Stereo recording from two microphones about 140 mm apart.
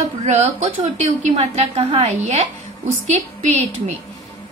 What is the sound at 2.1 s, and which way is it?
A woman's voice, 55° right (ahead or behind).